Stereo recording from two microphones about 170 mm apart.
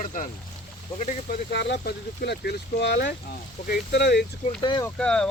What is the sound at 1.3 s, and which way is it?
Speech, 75° left (ahead or behind).